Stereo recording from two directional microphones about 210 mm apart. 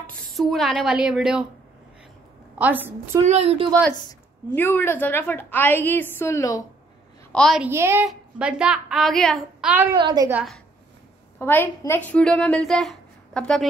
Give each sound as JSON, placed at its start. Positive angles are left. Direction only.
{"t": 0.0, "sound": "a woman's voice", "side_deg": 0}
{"t": 2.6, "sound": "a woman's voice", "side_deg": -10}
{"t": 3.3, "sound": "a woman's voice", "side_deg": -30}
{"t": 4.6, "sound": "a woman's voice", "side_deg": 10}
{"t": 7.3, "sound": "a woman's voice", "side_deg": 0}
{"t": 7.7, "sound": "a woman's voice", "side_deg": -10}
{"t": 9.9, "sound": "a woman's voice", "side_deg": -20}
{"t": 11.3, "sound": "a woman's voice", "side_deg": 10}